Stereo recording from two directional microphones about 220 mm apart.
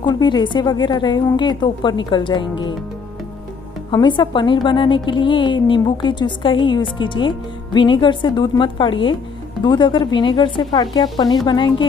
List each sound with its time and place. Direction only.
0.0 s a woman's voice: 20° left (ahead or behind)
3.9 s a woman's voice: 20° left (ahead or behind)